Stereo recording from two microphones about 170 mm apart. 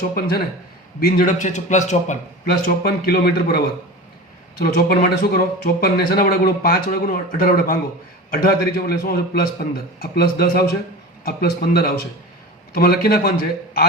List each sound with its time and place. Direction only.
0.1 s a man's voice: 65° left (ahead or behind); by 2.1 s 45° left (ahead or behind)
2.6 s speech: 65° left (ahead or behind)